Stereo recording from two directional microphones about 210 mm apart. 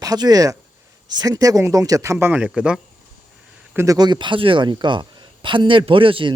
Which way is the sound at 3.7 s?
15° right (ahead or behind).